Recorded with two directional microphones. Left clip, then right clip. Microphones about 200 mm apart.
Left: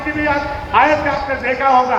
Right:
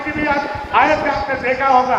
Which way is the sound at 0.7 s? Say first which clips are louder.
Left 1 dB; 45° right (ahead or behind).